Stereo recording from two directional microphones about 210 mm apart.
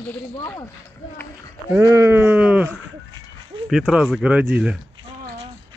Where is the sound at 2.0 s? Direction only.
10° right (ahead or behind).